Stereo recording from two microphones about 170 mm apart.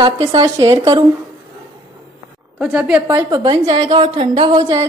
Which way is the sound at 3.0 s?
25° right (ahead or behind).